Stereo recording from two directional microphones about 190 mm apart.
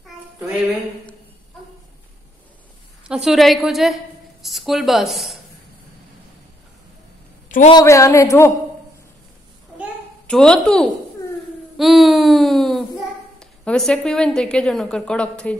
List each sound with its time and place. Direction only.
3.0 s a woman's voice: 5° right (ahead or behind)
7.4 s a sound: 40° left (ahead or behind)
7.7 s a man's voice: 15° left (ahead or behind)
10.2 s a child's voice: 5° left (ahead or behind)